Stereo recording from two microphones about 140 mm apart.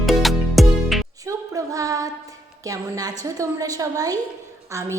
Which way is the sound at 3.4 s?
25° right (ahead or behind).